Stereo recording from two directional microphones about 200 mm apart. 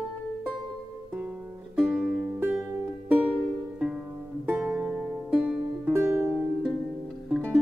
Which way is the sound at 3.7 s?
5° right (ahead or behind).